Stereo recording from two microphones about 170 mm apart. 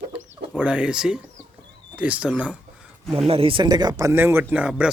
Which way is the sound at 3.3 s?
35° right (ahead or behind).